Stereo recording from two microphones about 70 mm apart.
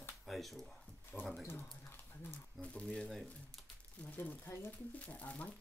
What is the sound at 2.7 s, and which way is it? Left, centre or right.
Speech, centre.